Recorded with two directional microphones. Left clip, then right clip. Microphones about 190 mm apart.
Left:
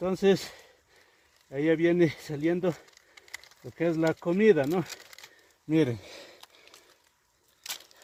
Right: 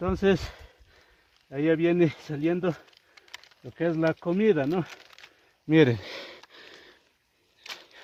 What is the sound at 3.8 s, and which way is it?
Speech, 10° right (ahead or behind).